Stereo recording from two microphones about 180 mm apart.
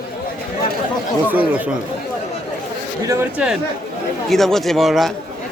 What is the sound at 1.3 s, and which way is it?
Speech, 10° right (ahead or behind).